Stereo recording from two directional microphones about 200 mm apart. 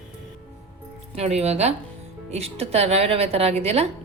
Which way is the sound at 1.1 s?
30° right (ahead or behind).